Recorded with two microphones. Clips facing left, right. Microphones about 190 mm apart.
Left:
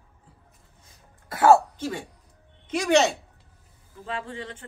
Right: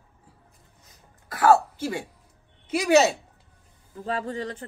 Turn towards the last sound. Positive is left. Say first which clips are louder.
# right 5 dB
turn(degrees=-40)  # may be behind; listen again after turning